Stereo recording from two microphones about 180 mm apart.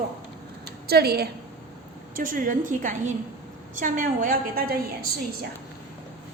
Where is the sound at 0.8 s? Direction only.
60° right (ahead or behind).